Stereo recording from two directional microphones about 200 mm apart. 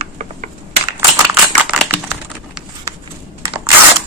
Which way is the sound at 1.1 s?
15° right (ahead or behind).